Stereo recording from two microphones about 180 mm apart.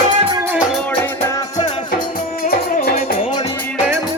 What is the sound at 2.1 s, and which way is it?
Music, 50° left (ahead or behind).